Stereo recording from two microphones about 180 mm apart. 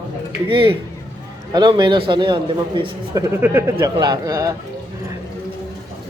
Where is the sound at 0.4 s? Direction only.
30° right (ahead or behind).